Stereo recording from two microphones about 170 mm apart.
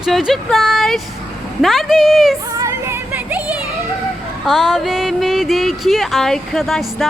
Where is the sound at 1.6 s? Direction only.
Centre (ahead or behind).